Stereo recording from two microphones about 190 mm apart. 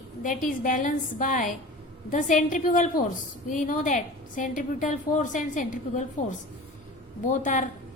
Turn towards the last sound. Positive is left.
turn(degrees=40)  # may be behind; listen again after turning